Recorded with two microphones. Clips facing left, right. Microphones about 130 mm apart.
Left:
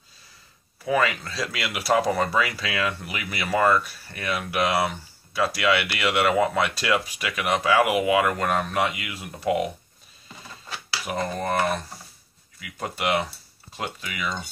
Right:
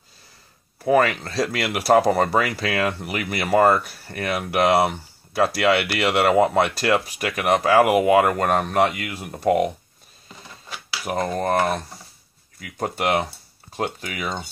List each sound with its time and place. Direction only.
0.8 s speech: 50° right (ahead or behind)
3.8 s speech: 55° right (ahead or behind)
4.6 s speech: 35° right (ahead or behind)
11.1 s speech: 45° right (ahead or behind)